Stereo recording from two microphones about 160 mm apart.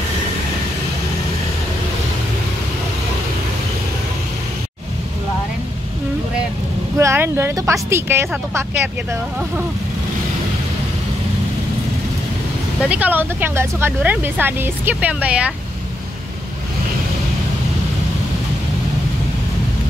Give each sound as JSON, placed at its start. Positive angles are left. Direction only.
{"t": 7.0, "sound": "speech", "side_deg": -15}
{"t": 12.8, "sound": "speech", "side_deg": -10}